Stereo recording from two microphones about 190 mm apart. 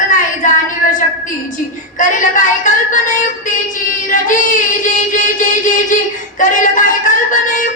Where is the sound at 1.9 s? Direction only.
45° left (ahead or behind).